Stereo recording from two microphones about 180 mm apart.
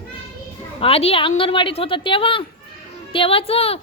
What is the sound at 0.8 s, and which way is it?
A woman's voice, 35° left (ahead or behind).